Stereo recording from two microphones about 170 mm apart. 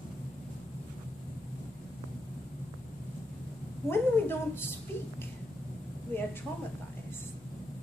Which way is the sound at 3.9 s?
15° left (ahead or behind).